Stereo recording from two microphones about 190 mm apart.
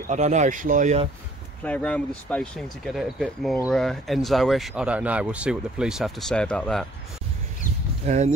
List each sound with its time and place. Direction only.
0.0 s speech: 40° right (ahead or behind)
1.6 s speech: 5° left (ahead or behind)
8.1 s speech: 35° right (ahead or behind)